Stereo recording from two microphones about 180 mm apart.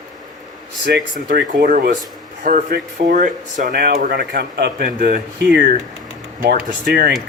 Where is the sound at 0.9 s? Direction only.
65° right (ahead or behind).